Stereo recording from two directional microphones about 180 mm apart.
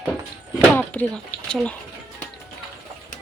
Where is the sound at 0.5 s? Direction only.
10° left (ahead or behind).